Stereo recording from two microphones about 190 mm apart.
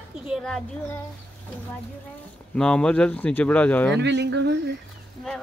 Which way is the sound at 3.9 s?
65° right (ahead or behind).